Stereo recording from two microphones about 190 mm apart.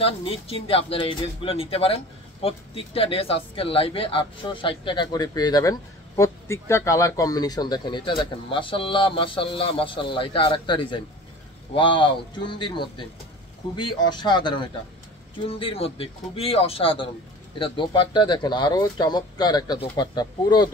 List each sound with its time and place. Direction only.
0.0 s a man's voice: 30° left (ahead or behind)